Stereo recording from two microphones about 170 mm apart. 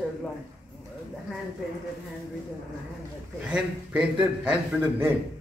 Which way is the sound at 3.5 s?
5° right (ahead or behind).